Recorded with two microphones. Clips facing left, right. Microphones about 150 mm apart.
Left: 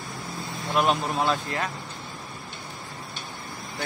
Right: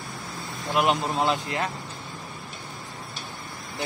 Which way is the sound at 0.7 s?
20° right (ahead or behind).